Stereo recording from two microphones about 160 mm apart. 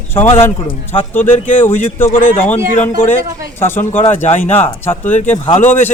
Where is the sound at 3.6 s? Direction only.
15° left (ahead or behind).